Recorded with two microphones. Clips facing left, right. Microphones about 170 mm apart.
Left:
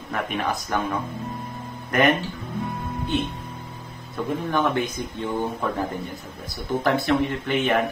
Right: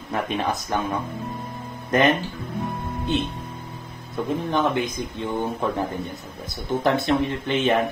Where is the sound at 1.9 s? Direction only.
20° right (ahead or behind).